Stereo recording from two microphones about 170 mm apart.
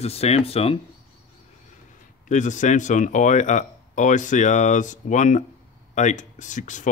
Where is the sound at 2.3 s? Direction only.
45° left (ahead or behind).